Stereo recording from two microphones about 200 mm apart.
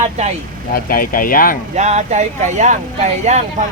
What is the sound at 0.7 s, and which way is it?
Speech, 45° left (ahead or behind).